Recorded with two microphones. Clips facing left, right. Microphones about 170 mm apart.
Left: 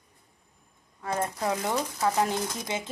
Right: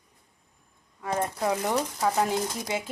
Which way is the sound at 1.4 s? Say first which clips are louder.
Right 4 dB; 10° right (ahead or behind).